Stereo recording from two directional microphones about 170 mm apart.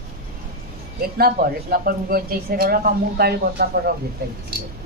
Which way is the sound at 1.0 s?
60° right (ahead or behind).